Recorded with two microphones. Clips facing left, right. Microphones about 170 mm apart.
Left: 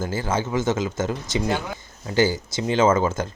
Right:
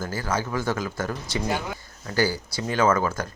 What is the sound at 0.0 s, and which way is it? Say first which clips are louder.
Speech: left 3 dB; 25° left (ahead or behind).